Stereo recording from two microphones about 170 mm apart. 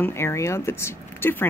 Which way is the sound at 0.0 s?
15° left (ahead or behind).